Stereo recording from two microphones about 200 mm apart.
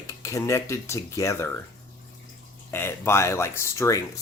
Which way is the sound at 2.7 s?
10° left (ahead or behind).